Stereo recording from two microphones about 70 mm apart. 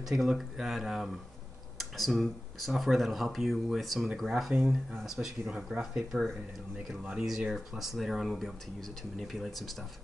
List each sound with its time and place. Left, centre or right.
0.0 s speech: centre
7.2 s speech: centre